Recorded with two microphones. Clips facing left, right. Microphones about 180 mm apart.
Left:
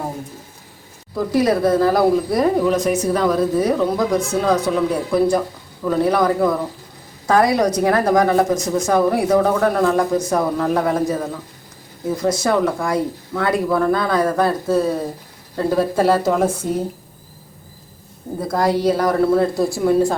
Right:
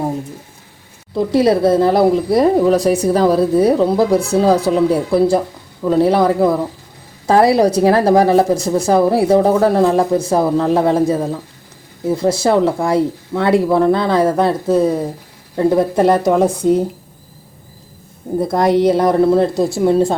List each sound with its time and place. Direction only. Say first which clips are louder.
1.1 s speech: right 4 dB; 25° right (ahead or behind)
18.3 s speech: right 5 dB; 20° right (ahead or behind)